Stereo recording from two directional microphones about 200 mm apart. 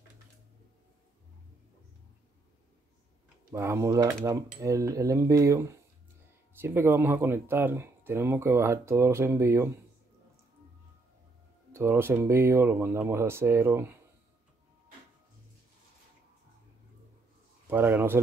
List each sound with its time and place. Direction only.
3.5 s speech: 15° right (ahead or behind)
11.7 s speech: 10° right (ahead or behind)
17.6 s speech: 10° right (ahead or behind)